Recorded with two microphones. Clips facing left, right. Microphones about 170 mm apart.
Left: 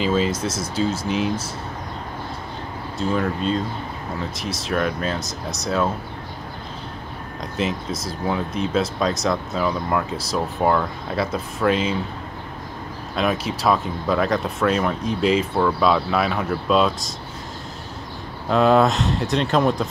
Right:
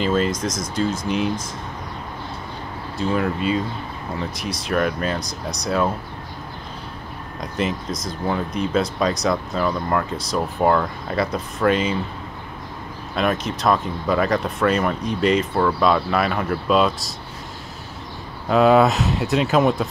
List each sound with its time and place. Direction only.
0.0 s speech: 5° left (ahead or behind)
3.0 s speech: centre (ahead or behind)
5.2 s speech: 25° left (ahead or behind)
8.3 s speech: centre (ahead or behind)
13.1 s speech: centre (ahead or behind)
18.5 s speech: 5° right (ahead or behind)